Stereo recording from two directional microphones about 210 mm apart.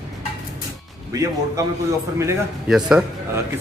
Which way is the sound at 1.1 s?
15° right (ahead or behind).